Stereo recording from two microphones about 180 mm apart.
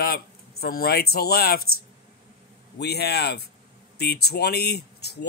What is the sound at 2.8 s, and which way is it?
Speech, 65° left (ahead or behind).